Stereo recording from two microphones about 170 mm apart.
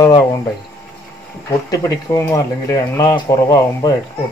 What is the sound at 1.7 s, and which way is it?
Speech, 20° left (ahead or behind).